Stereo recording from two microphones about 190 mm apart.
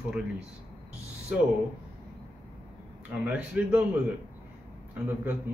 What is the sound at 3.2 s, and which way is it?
Speech, 5° right (ahead or behind).